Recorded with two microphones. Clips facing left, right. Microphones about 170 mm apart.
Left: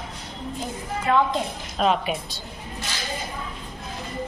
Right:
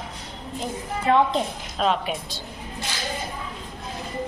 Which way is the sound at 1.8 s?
5° left (ahead or behind).